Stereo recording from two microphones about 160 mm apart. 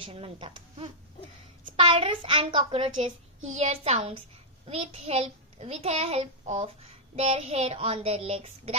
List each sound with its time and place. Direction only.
0.0 s a child's voice: 35° right (ahead or behind)